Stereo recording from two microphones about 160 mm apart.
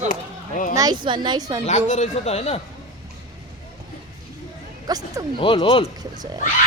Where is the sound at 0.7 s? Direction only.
25° right (ahead or behind).